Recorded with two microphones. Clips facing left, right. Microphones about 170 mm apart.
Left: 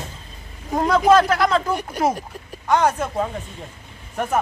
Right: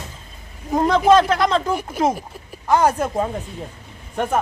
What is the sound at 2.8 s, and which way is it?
Speech, 35° right (ahead or behind).